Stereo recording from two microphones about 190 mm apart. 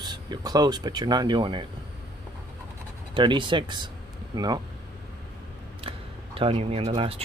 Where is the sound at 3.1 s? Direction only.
25° right (ahead or behind).